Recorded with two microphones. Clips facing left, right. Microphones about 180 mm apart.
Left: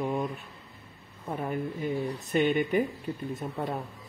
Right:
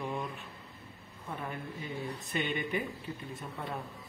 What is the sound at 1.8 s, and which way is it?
Speech, 50° left (ahead or behind).